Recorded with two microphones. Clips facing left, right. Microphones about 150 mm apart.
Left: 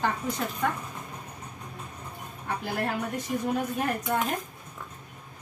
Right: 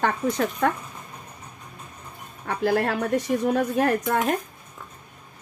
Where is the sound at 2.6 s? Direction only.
80° right.